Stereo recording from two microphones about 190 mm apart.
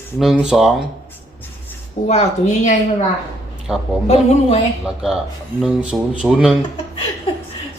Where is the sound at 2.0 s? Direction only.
35° left (ahead or behind).